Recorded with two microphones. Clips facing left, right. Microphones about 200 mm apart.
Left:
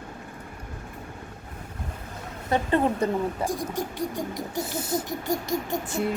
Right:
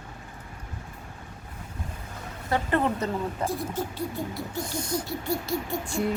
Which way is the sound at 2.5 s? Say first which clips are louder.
Left 2 dB; 20° left (ahead or behind).